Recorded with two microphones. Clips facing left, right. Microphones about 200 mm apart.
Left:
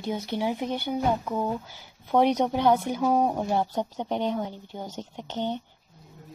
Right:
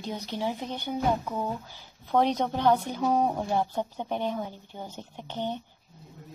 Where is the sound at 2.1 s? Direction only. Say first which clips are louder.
Left 3 dB; 10° left (ahead or behind).